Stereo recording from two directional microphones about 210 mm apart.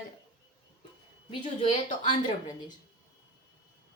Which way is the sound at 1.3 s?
25° left (ahead or behind).